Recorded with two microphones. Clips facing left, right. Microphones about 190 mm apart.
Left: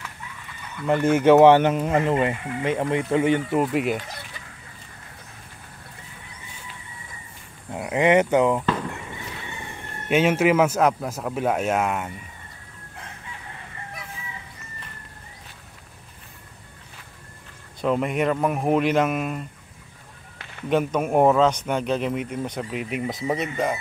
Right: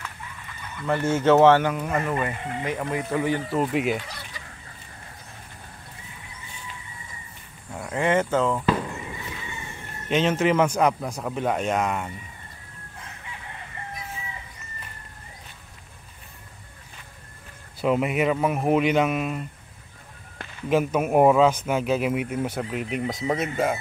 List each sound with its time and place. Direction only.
0.8 s speech: 15° left (ahead or behind)
3.5 s speech: centre (ahead or behind)
7.7 s speech: 20° left (ahead or behind)
10.0 s speech: 10° left (ahead or behind)
17.7 s speech: 5° right (ahead or behind)
20.7 s speech: 5° right (ahead or behind)